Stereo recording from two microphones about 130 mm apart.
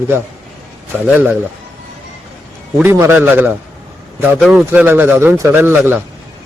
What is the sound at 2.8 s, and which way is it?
A man's voice, 20° right (ahead or behind).